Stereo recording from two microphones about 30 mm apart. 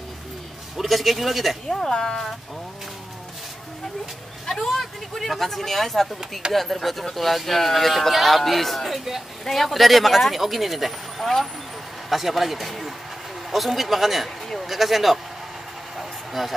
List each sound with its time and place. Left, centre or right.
0.8 s speech: centre
1.7 s speech: centre
4.5 s speech: centre
16.0 s vehicle: centre